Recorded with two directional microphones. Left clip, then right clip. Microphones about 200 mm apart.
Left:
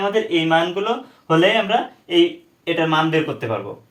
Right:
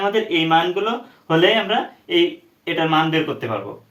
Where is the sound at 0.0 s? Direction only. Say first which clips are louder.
Even; 10° left (ahead or behind).